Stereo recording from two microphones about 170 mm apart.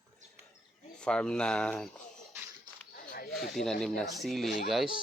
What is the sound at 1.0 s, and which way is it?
Speech, 5° left (ahead or behind).